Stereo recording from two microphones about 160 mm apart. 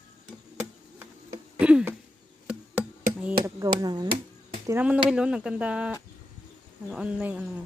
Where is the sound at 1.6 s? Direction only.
5° right (ahead or behind).